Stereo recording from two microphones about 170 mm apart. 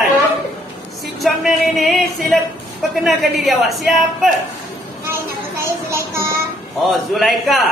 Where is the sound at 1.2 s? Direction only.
Centre (ahead or behind).